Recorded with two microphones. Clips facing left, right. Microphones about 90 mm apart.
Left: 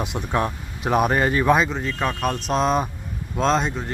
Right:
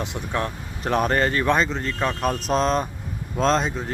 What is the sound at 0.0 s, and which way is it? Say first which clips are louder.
Speech: left 3 dB; 15° left (ahead or behind).